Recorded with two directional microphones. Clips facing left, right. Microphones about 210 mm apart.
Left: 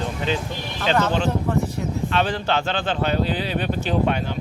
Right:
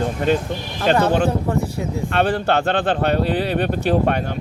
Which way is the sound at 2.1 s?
55° right (ahead or behind).